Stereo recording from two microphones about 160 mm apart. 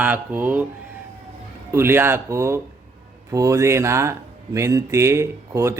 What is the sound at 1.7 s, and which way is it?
Speech, 15° right (ahead or behind).